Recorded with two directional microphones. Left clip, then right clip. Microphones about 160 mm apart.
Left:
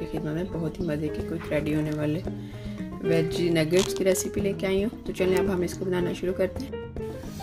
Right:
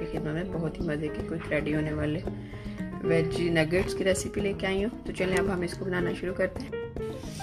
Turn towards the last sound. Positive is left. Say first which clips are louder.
# left 2 dB
turn(degrees=50)  # may be behind; listen again after turning